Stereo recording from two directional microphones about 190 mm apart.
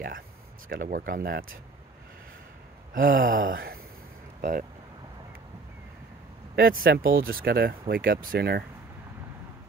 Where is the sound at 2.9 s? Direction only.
45° right (ahead or behind).